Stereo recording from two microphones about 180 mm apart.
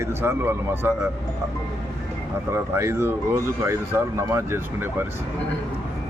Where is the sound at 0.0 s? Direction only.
15° right (ahead or behind).